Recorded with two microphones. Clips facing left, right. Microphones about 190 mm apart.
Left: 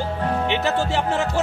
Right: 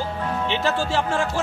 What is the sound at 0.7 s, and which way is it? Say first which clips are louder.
Music: left 1 dB; 20° left (ahead or behind).